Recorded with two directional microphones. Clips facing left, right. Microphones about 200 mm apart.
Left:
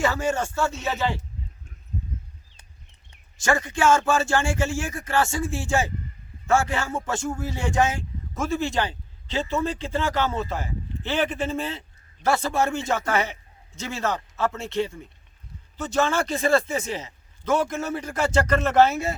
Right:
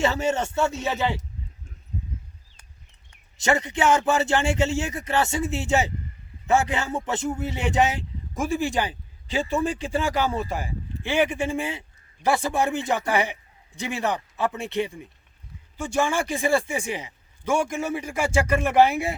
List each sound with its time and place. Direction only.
0.0 s a man's voice: 25° right (ahead or behind)
3.3 s a man's voice: 20° right (ahead or behind)